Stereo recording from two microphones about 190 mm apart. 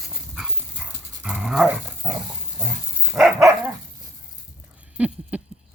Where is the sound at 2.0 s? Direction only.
20° right (ahead or behind).